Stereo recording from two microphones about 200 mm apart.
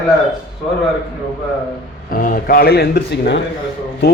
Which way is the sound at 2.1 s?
45° left (ahead or behind).